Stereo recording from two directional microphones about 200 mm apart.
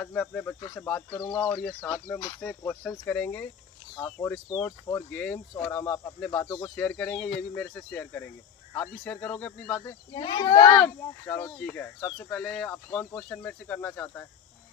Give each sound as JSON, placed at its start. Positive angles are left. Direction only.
{"t": 0.0, "sound": "speech", "side_deg": 5}
{"t": 10.1, "sound": "a child's voice", "side_deg": 20}
{"t": 10.8, "sound": "speech", "side_deg": 10}